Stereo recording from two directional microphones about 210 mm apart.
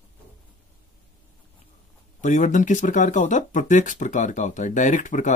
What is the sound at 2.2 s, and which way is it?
Speech, 35° left (ahead or behind).